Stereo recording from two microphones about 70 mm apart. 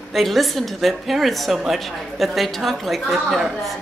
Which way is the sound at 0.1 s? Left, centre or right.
Centre.